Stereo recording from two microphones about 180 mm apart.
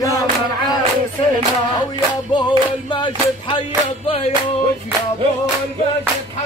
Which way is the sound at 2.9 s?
25° left (ahead or behind).